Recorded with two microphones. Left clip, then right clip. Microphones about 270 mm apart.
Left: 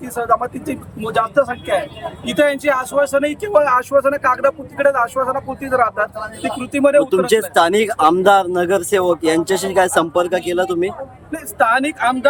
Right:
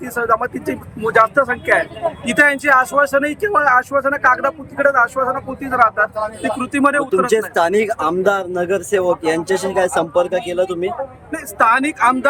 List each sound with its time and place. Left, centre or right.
0.0 s speech: centre